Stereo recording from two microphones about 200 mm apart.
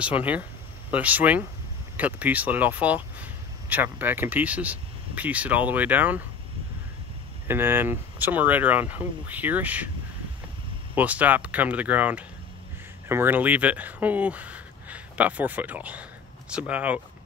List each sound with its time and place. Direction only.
0.2 s speech: 5° right (ahead or behind)
7.4 s speech: 10° right (ahead or behind)
11.0 s speech: 10° right (ahead or behind)